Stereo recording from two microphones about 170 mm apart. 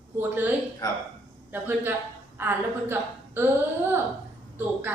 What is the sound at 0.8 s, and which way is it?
Speech, 20° left (ahead or behind).